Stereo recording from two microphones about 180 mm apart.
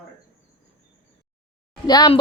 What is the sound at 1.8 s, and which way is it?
Speech, 25° left (ahead or behind).